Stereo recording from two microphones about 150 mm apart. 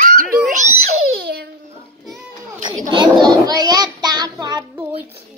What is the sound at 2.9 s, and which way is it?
Child singing, 30° right (ahead or behind).